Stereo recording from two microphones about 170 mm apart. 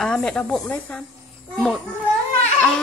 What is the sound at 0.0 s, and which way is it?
Speech, 5° left (ahead or behind).